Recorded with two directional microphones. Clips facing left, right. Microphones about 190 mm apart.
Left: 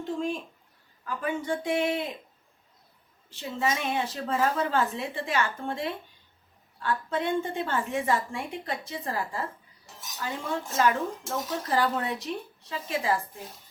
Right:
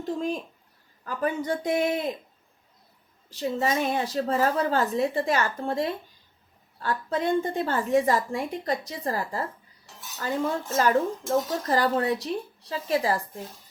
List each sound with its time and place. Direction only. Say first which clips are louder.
0.0 s a woman's voice: right 2 dB; 40° right (ahead or behind)
3.2 s a woman's voice: right 3 dB; 40° right (ahead or behind)
10.8 s a woman's voice: right 3 dB; 40° right (ahead or behind)